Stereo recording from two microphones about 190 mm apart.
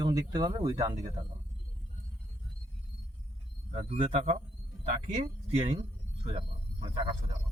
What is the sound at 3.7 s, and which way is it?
Speech, 35° right (ahead or behind).